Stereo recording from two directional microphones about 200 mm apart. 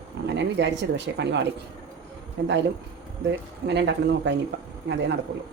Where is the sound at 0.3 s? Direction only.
60° right (ahead or behind).